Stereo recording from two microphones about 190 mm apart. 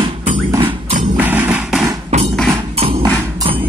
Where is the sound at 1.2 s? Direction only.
10° right (ahead or behind).